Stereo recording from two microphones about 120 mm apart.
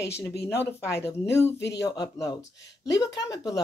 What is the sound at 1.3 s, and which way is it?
A woman's voice, 25° left (ahead or behind).